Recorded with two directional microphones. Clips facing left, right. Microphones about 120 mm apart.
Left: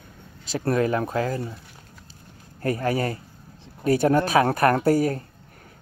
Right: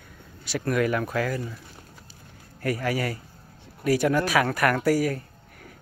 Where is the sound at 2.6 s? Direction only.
30° left (ahead or behind).